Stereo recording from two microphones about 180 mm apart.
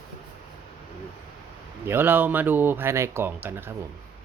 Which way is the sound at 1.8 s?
10° right (ahead or behind).